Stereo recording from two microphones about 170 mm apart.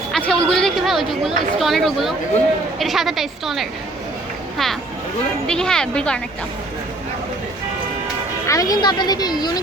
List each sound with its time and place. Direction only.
0.1 s a woman's voice: 5° left (ahead or behind)
8.4 s speech: 20° left (ahead or behind)